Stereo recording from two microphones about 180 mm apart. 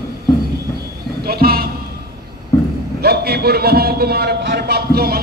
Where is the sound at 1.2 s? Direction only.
55° right (ahead or behind).